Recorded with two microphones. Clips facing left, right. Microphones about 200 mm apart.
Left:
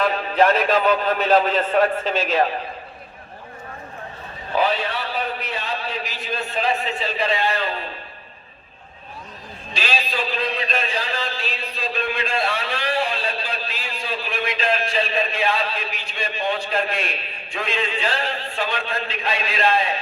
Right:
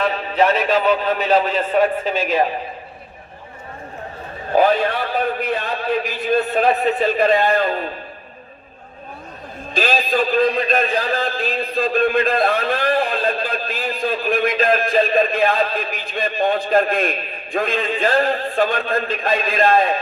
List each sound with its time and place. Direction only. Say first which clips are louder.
0.0 s a man's voice: even; centre (ahead or behind)
4.5 s a man's voice: right 6 dB; 50° right (ahead or behind)
9.7 s a man's voice: right 7 dB; 50° right (ahead or behind)